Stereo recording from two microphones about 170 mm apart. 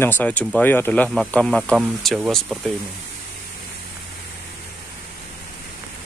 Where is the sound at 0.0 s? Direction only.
10° left (ahead or behind); by 2.6 s 5° right (ahead or behind).